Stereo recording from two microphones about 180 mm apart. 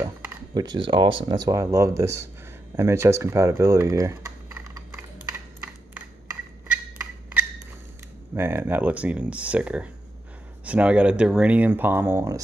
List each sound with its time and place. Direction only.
0.0 s speech: 20° right (ahead or behind)
5.9 s a sound: 10° right (ahead or behind)
8.4 s speech: 10° right (ahead or behind)